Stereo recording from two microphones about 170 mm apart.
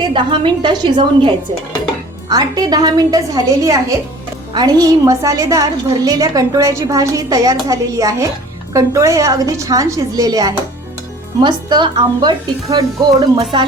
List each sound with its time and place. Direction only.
0.0 s a woman's voice: 30° right (ahead or behind)
2.3 s a woman's voice: 25° right (ahead or behind)